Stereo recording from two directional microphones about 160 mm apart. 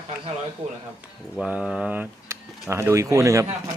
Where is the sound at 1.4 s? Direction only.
5° right (ahead or behind).